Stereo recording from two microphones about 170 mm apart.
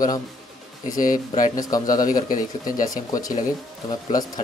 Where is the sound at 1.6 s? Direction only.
20° left (ahead or behind).